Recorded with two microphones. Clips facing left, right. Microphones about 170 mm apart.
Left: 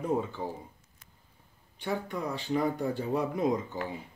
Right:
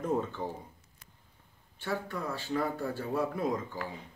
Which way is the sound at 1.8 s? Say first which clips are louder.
Left 2 dB; 15° left (ahead or behind).